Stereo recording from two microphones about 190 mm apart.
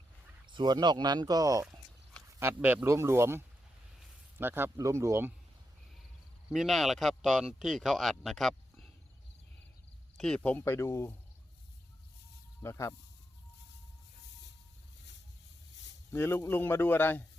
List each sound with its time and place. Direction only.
0.4 s speech: 25° right (ahead or behind)
6.5 s speech: centre (ahead or behind)
10.2 s speech: 5° left (ahead or behind)
12.6 s speech: 15° left (ahead or behind)
16.1 s speech: 10° left (ahead or behind)